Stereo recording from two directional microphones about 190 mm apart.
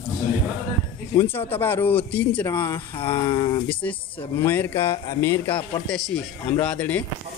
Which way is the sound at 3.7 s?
10° left (ahead or behind).